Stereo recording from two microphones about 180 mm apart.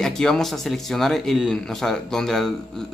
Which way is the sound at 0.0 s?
5° left (ahead or behind).